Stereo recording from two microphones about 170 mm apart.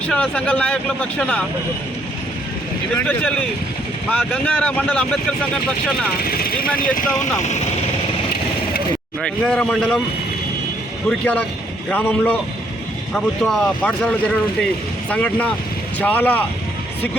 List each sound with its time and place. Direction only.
0.1 s speech: 5° left (ahead or behind)
3.1 s speech: 10° left (ahead or behind)
6.2 s speech: 60° left (ahead or behind)
6.9 s speech: 50° left (ahead or behind)
9.2 s speech: 5° left (ahead or behind)
11.9 s speech: 10° left (ahead or behind)